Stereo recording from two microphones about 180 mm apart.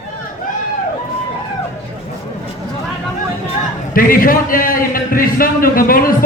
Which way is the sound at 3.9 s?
50° left (ahead or behind).